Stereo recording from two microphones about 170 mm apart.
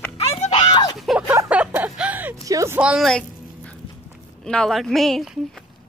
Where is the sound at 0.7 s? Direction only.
25° left (ahead or behind).